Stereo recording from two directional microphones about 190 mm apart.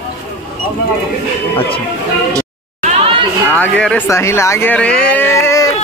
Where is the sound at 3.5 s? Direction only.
5° left (ahead or behind).